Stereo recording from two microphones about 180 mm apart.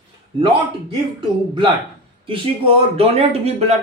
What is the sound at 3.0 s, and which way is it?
Speech, 35° right (ahead or behind).